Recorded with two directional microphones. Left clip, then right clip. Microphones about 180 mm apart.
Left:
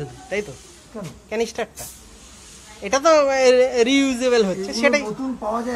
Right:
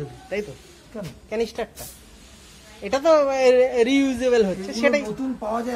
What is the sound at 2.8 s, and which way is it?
A man's voice, 10° right (ahead or behind).